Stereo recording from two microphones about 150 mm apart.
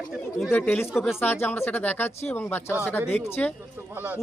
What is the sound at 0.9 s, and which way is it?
Speech, centre (ahead or behind).